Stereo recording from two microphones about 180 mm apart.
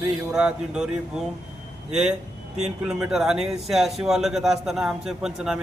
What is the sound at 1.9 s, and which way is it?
Speech, 5° right (ahead or behind).